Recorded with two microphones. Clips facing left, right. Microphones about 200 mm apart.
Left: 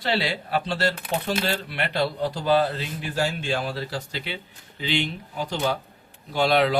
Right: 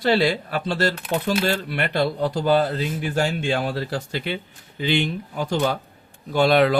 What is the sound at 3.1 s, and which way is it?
Speech, 55° right (ahead or behind).